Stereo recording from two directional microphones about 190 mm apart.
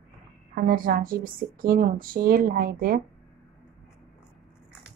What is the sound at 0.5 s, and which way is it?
Speech, 50° right (ahead or behind).